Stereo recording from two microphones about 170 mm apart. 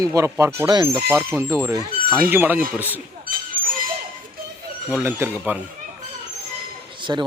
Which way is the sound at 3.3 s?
55° right (ahead or behind).